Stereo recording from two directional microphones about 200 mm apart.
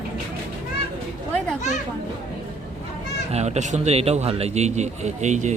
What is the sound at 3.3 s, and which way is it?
A man's voice, 35° right (ahead or behind).